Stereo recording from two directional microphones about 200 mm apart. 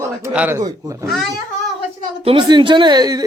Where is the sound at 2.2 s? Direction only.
25° right (ahead or behind).